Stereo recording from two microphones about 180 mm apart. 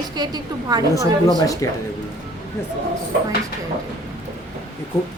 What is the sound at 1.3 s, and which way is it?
Speech, 20° left (ahead or behind).